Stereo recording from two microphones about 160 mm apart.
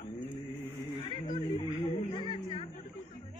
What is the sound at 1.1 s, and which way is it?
Music, 30° left (ahead or behind).